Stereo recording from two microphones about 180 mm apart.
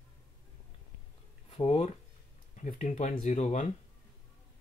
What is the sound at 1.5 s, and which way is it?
Speech, 35° left (ahead or behind).